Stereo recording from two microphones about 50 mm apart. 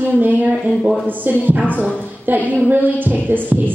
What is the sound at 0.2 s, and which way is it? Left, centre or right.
A woman's voice, right.